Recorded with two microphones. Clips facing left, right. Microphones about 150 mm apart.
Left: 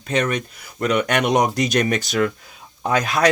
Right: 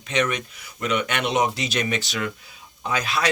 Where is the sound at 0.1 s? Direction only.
35° left (ahead or behind).